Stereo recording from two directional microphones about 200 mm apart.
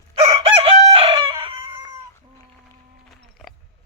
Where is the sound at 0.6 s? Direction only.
25° right (ahead or behind).